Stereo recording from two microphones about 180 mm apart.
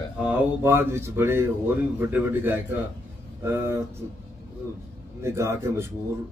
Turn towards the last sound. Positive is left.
turn(degrees=-15)  # may be behind; listen again after turning